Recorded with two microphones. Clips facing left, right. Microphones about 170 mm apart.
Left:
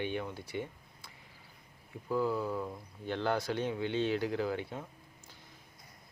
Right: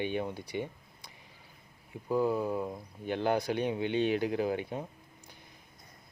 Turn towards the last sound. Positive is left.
turn(degrees=-15)  # may be behind; listen again after turning